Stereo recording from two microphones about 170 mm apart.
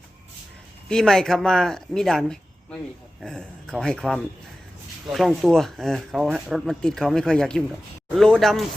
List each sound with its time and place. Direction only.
0.9 s speech: 5° left (ahead or behind)